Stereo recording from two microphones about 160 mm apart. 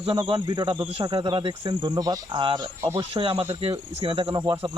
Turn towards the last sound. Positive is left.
turn(degrees=-30)  # may be behind; listen again after turning